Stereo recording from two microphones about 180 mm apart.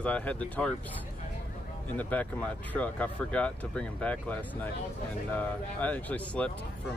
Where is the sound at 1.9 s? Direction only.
10° left (ahead or behind).